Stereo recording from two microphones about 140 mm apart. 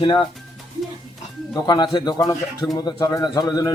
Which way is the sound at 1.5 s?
30° left (ahead or behind).